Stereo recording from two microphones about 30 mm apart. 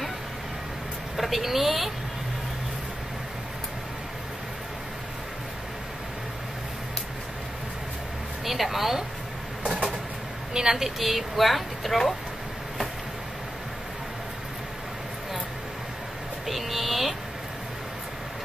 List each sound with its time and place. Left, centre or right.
1.1 s speech: centre
8.5 s speech: centre
10.5 s a woman's voice: right
10.8 s a woman's voice: centre
16.4 s a sound: centre